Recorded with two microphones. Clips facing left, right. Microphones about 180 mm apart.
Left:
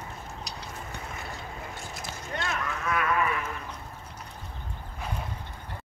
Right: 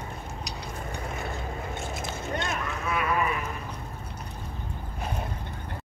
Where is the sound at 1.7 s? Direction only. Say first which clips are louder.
Right 5 dB; 20° right (ahead or behind).